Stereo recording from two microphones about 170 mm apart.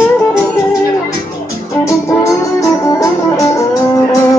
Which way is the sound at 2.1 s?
20° left (ahead or behind).